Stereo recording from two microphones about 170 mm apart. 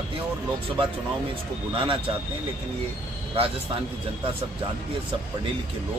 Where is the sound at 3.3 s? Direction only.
35° right (ahead or behind).